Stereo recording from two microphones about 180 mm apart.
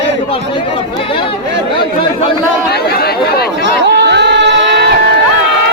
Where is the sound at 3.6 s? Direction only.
70° right (ahead or behind).